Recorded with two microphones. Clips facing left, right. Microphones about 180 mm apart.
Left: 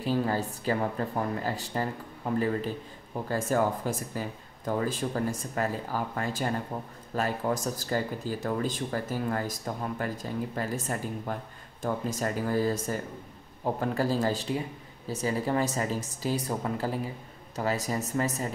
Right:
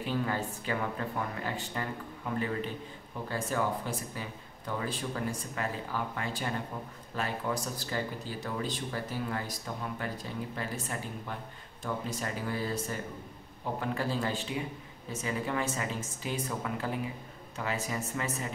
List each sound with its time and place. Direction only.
0.0 s speech: 35° left (ahead or behind)